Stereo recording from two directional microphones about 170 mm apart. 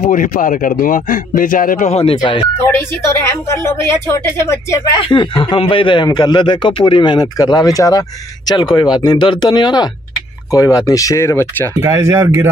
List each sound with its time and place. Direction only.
0.0 s speech: 50° left (ahead or behind)
1.9 s speech: 35° left (ahead or behind)
3.4 s speech: 15° left (ahead or behind)
5.0 s speech: 30° left (ahead or behind)
11.8 s speech: 15° right (ahead or behind)